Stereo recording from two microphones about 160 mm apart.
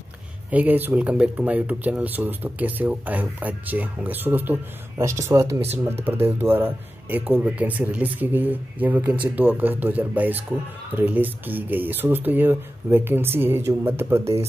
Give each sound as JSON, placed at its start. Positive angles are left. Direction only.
{"t": 0.5, "sound": "speech", "side_deg": -10}